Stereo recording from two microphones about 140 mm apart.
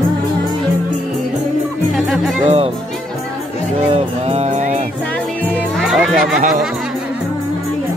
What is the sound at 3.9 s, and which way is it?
Music, 50° right (ahead or behind).